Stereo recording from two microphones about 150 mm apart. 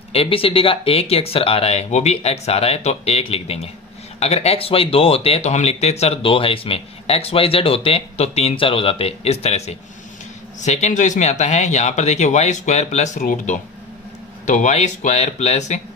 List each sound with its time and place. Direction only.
0.1 s speech: 40° left (ahead or behind)